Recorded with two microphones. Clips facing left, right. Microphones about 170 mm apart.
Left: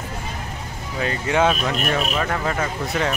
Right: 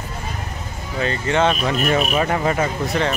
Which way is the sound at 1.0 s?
5° left (ahead or behind).